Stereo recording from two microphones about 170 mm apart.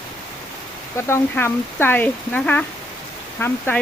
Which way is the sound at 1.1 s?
15° left (ahead or behind).